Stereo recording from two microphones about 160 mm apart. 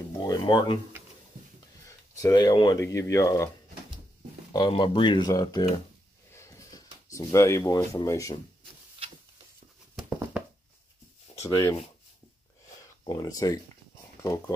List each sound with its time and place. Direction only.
0.2 s speech: 30° left (ahead or behind)
1.9 s speech: 20° left (ahead or behind)
4.5 s speech: 30° left (ahead or behind)
6.3 s a sound: 20° left (ahead or behind)
9.9 s a sound: 10° right (ahead or behind)
11.4 s speech: 15° left (ahead or behind)
13.0 s speech: 25° left (ahead or behind)